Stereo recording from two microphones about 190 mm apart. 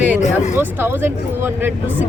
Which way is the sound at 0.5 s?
10° right (ahead or behind).